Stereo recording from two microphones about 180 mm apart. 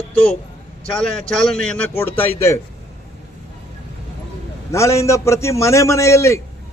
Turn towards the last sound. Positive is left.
turn(degrees=15)  # may be behind; listen again after turning